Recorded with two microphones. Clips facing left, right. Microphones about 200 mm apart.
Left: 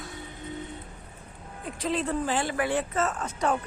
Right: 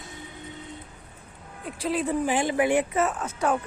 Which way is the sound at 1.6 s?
10° right (ahead or behind).